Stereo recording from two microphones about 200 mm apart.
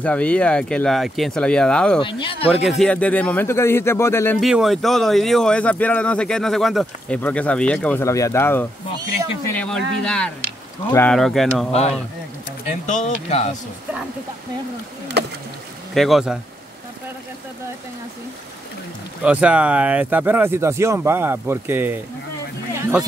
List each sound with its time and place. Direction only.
0.0 s speech: 5° left (ahead or behind)
2.0 s speech: 25° left (ahead or behind)
2.8 s speech: 5° left (ahead or behind)
4.4 s speech: centre (ahead or behind)
12.8 s speech: 35° left (ahead or behind)
15.9 s speech: centre (ahead or behind)
19.2 s speech: 5° right (ahead or behind)